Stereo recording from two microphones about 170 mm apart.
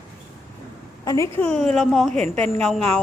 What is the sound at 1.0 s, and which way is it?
A woman's voice, 15° left (ahead or behind).